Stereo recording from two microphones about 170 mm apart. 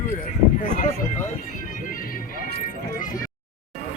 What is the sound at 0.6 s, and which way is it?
Speech, 45° left (ahead or behind).